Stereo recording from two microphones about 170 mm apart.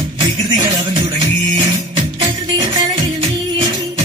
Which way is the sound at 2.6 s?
25° right (ahead or behind).